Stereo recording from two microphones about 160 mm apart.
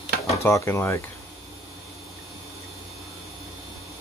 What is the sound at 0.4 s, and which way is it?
Speech, 15° left (ahead or behind).